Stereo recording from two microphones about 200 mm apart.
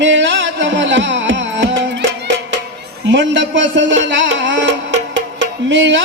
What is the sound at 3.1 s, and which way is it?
Music, 65° right (ahead or behind).